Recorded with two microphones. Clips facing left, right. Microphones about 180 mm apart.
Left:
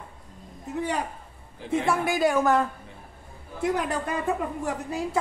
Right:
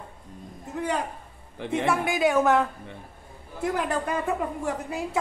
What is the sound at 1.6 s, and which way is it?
Speech, 70° right (ahead or behind).